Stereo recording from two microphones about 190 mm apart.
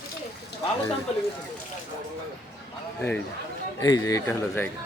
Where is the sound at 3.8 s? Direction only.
20° left (ahead or behind).